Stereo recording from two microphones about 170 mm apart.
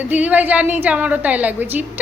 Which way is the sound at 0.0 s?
10° right (ahead or behind).